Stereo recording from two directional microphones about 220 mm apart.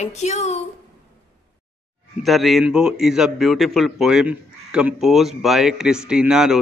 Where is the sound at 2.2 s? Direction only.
Centre (ahead or behind).